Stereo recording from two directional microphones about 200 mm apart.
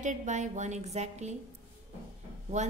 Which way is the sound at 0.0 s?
35° right (ahead or behind).